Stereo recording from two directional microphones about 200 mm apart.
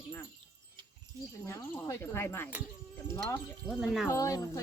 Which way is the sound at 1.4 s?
15° left (ahead or behind).